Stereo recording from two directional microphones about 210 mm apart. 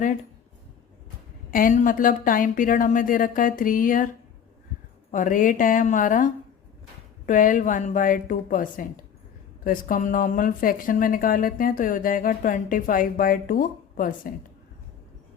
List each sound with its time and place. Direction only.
1.5 s speech: 40° left (ahead or behind)
5.1 s speech: 40° left (ahead or behind)
7.3 s speech: 40° left (ahead or behind)